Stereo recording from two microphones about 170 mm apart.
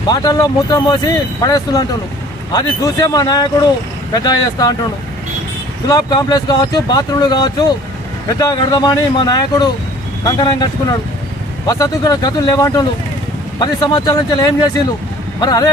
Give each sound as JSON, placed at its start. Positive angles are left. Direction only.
{"t": 0.1, "sound": "speech", "side_deg": 25}
{"t": 5.9, "sound": "speech", "side_deg": 25}